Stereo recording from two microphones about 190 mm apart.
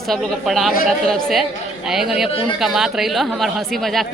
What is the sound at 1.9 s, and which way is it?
Speech, centre (ahead or behind).